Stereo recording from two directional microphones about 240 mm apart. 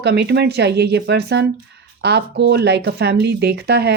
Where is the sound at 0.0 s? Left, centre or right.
Right.